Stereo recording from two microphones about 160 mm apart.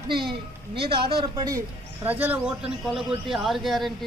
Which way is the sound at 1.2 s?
25° right (ahead or behind).